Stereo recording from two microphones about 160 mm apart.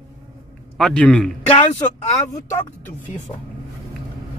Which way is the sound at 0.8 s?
5° left (ahead or behind).